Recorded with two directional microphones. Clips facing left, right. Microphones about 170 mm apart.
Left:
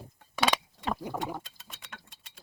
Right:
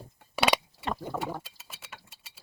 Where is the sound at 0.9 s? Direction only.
15° left (ahead or behind).